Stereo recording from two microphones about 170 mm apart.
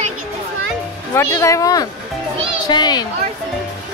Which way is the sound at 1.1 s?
20° left (ahead or behind).